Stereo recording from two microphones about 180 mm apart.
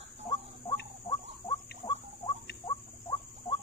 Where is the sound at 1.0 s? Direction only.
25° left (ahead or behind).